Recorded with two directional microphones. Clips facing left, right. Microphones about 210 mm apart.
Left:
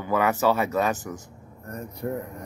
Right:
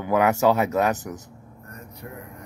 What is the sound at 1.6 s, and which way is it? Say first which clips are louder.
Vehicle: left 9 dB; 40° left (ahead or behind).